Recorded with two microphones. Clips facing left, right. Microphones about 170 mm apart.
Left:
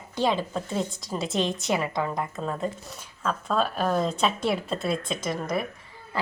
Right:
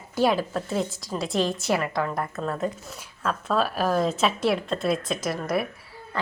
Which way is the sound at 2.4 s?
Centre (ahead or behind).